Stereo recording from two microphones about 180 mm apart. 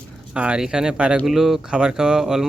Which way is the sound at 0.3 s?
5° right (ahead or behind).